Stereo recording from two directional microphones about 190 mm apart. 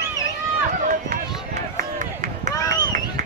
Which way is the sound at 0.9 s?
45° right (ahead or behind).